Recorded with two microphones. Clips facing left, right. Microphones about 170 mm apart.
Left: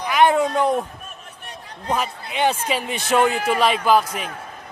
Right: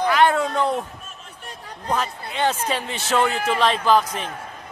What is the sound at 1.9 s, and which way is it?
Speech, 10° left (ahead or behind).